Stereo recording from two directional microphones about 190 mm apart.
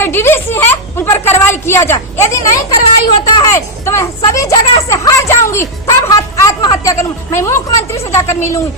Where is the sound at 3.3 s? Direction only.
20° left (ahead or behind).